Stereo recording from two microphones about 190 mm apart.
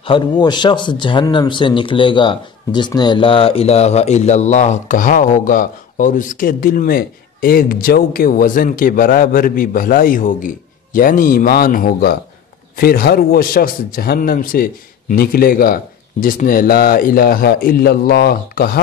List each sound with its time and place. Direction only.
0.0 s speech: 25° left (ahead or behind); by 18.8 s 50° left (ahead or behind)